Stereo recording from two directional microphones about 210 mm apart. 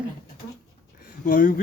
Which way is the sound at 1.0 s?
40° left (ahead or behind).